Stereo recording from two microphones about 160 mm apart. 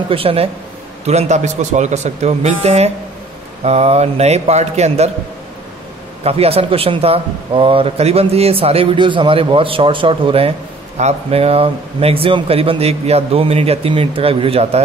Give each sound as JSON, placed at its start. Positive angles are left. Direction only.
{"t": 0.1, "sound": "speech", "side_deg": -35}
{"t": 6.2, "sound": "speech", "side_deg": -40}